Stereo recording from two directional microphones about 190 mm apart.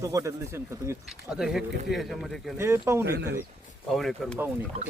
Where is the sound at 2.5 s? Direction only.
15° right (ahead or behind).